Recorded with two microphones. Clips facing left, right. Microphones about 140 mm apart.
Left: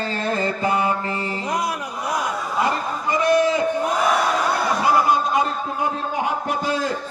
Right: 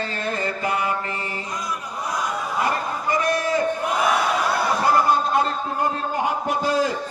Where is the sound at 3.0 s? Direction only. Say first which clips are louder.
Left 5 dB; 20° left (ahead or behind).